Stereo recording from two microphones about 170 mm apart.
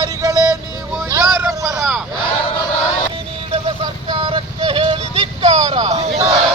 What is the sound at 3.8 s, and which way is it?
Music, 25° right (ahead or behind).